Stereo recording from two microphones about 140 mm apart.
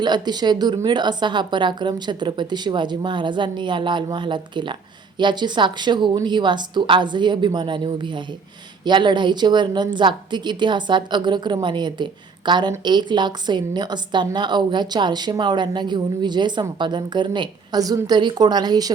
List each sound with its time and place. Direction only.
0.0 s speech: 30° right (ahead or behind)